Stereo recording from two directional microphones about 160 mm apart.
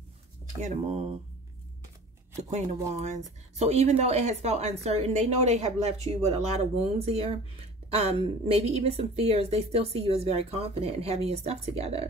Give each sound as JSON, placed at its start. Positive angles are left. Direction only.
{"t": 0.6, "sound": "speech", "side_deg": -45}
{"t": 2.9, "sound": "a woman's voice", "side_deg": -45}